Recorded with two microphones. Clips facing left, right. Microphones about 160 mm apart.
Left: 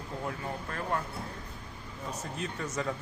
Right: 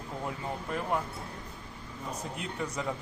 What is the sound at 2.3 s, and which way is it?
Speech, 10° right (ahead or behind).